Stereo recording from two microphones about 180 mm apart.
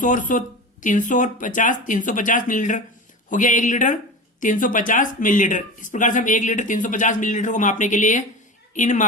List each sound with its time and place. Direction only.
0.0 s a woman's voice: 45° left (ahead or behind)